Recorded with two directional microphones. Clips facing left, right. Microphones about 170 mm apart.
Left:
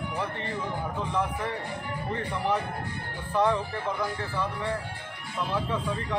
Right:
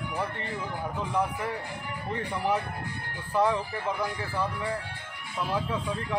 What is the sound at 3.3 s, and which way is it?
Speech, 10° right (ahead or behind).